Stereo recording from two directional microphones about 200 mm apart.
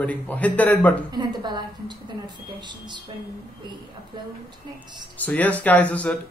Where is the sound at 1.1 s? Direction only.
20° right (ahead or behind).